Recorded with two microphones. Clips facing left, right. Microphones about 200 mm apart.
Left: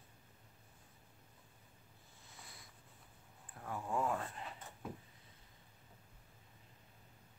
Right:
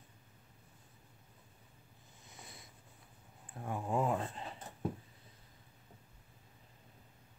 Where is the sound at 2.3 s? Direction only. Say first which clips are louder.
Right 4 dB; 20° right (ahead or behind).